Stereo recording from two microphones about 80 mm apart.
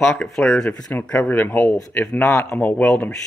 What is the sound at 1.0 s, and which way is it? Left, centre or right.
Speech, centre.